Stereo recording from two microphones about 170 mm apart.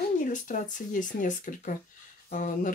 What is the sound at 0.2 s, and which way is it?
Speech, 50° left (ahead or behind).